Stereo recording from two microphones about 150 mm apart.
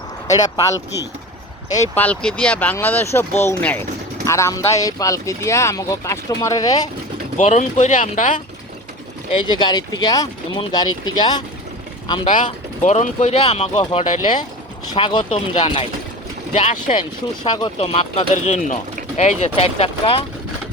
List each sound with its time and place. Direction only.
0.3 s speech: 25° left (ahead or behind)
2.0 s speech: 10° left (ahead or behind); by 6.8 s 25° left (ahead or behind)
7.3 s speech: 55° left (ahead or behind)
9.5 s speech: 30° left (ahead or behind)
12.8 s speech: 50° left (ahead or behind)
14.9 s speech: 35° left (ahead or behind)
15.2 s speech: 50° left (ahead or behind)
17.4 s speech: 30° left (ahead or behind)
17.7 s speech: 40° left (ahead or behind)